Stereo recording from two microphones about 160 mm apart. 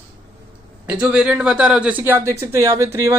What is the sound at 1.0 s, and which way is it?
A man's voice, 5° right (ahead or behind).